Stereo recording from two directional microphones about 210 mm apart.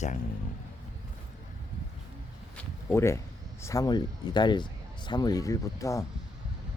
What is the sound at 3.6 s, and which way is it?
Speech, 15° left (ahead or behind).